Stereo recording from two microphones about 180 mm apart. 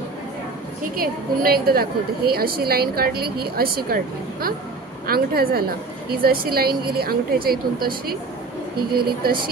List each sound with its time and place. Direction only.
0.9 s a woman's voice: 55° right (ahead or behind)